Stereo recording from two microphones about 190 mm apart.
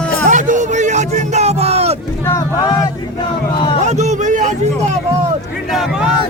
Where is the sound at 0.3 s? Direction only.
40° right (ahead or behind).